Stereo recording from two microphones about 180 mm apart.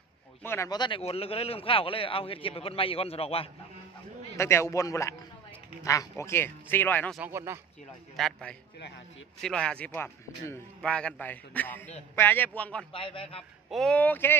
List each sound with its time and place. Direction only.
0.4 s speech: 15° left (ahead or behind); by 3.4 s 35° left (ahead or behind)
4.4 s speech: 15° left (ahead or behind)
7.2 s speech: 15° right (ahead or behind)
8.2 s a man's voice: 5° left (ahead or behind)
12.9 s a man's voice: 30° left (ahead or behind)
13.7 s speech: centre (ahead or behind)